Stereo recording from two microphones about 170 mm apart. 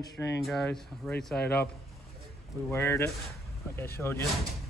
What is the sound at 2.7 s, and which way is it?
Speech, 15° left (ahead or behind).